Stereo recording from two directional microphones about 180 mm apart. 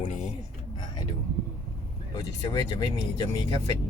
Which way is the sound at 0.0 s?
45° left (ahead or behind).